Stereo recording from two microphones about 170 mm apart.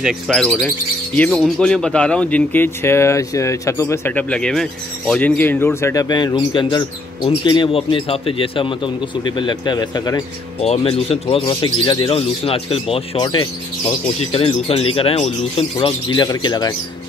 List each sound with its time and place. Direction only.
0.0 s speech: centre (ahead or behind); by 10.2 s 25° left (ahead or behind)
10.6 s speech: 35° left (ahead or behind)